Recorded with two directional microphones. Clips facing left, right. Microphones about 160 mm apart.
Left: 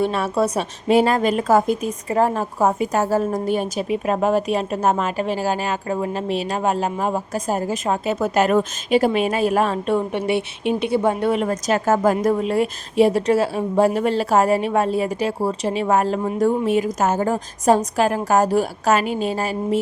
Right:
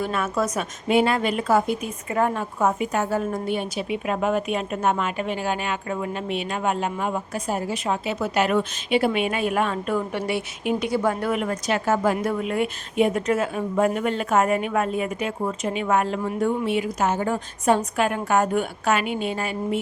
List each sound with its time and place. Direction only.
0.0 s a woman's voice: 30° left (ahead or behind)